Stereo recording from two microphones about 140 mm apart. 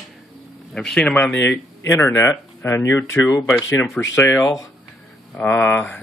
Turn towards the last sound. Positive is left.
turn(degrees=15)  # may be behind; listen again after turning